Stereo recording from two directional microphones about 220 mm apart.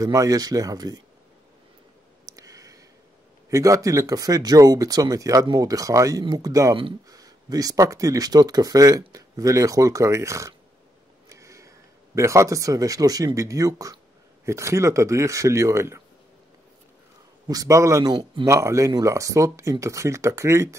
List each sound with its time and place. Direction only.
0.0 s speech: 15° right (ahead or behind)
2.2 s a sound: 15° right (ahead or behind)
3.4 s speech: 15° right (ahead or behind)
11.2 s a sound: 15° right (ahead or behind)
12.2 s speech: 15° right (ahead or behind)
17.5 s speech: 15° right (ahead or behind)